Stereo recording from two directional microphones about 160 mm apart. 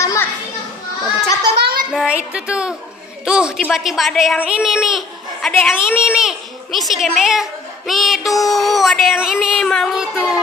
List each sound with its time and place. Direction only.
0.0 s children playing: 20° left (ahead or behind)
1.6 s child singing: 70° right (ahead or behind)
1.9 s a woman's voice: 5° right (ahead or behind)